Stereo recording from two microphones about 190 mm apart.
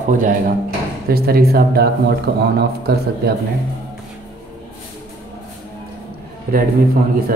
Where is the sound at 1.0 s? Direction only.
55° right (ahead or behind).